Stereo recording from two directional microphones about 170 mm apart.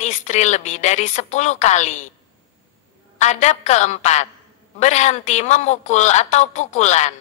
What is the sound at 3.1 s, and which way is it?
A woman's voice, 45° left (ahead or behind).